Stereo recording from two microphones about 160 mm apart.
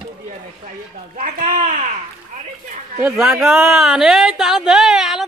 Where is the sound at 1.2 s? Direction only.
55° right (ahead or behind).